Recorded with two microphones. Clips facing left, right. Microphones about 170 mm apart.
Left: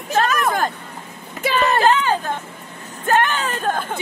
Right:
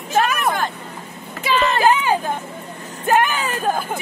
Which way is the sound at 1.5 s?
50° left (ahead or behind).